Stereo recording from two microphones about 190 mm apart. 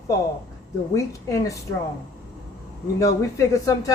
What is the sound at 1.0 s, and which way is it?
Speech, 15° left (ahead or behind).